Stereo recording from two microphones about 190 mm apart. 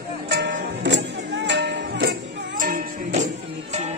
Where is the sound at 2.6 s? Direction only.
45° right (ahead or behind).